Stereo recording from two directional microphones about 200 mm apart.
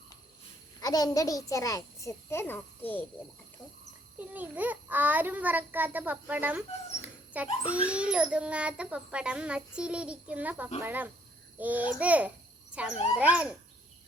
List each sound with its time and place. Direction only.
0.8 s a child's voice: 20° left (ahead or behind)
4.2 s a child's voice: 10° right (ahead or behind)